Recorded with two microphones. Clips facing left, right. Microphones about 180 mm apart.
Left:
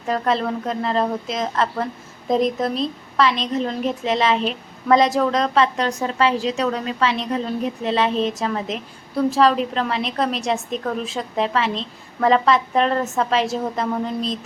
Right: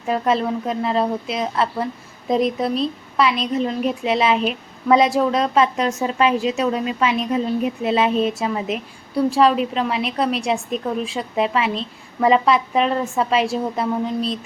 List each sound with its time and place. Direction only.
0.1 s a woman's voice: 10° right (ahead or behind)